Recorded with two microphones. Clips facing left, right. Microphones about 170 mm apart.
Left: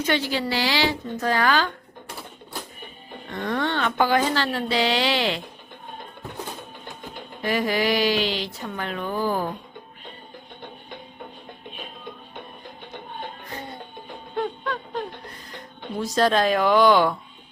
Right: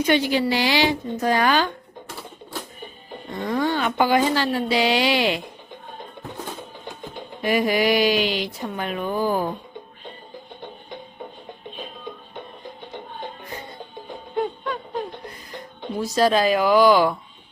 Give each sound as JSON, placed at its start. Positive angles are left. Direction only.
{"t": 0.0, "sound": "speech", "side_deg": -15}
{"t": 3.2, "sound": "speech", "side_deg": -10}
{"t": 7.4, "sound": "speech", "side_deg": -15}
{"t": 14.3, "sound": "a sound", "side_deg": -15}
{"t": 15.8, "sound": "a woman's voice", "side_deg": -5}